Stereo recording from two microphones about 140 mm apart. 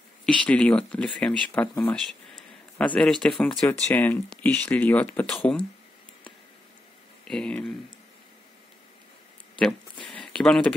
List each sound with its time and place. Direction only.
0.2 s speech: 10° left (ahead or behind)
3.9 s speech: 15° left (ahead or behind)
7.2 s speech: 5° left (ahead or behind)
9.6 s a sound: 5° left (ahead or behind)